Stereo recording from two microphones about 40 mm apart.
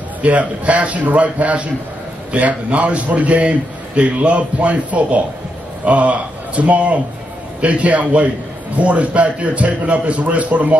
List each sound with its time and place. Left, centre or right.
0.2 s a man's voice: right